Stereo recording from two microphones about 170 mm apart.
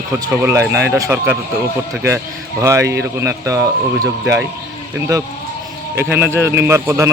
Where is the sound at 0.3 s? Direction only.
15° right (ahead or behind).